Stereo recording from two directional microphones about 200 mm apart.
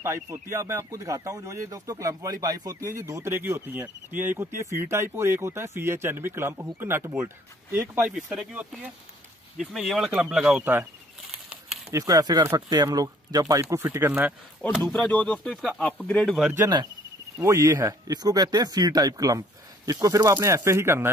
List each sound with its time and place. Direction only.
0.0 s speech: 15° right (ahead or behind)
11.3 s typewriter: centre (ahead or behind)
11.9 s speech: 15° right (ahead or behind)
14.8 s speech: 5° left (ahead or behind)
16.5 s speech: 15° right (ahead or behind)